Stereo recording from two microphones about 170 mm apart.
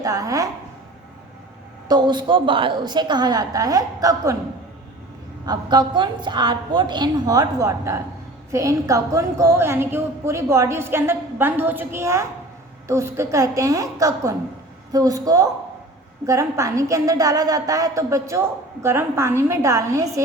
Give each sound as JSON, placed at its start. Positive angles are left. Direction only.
{"t": 0.0, "sound": "a woman's voice", "side_deg": -20}
{"t": 1.9, "sound": "a woman's voice", "side_deg": -25}
{"t": 5.5, "sound": "a woman's voice", "side_deg": -25}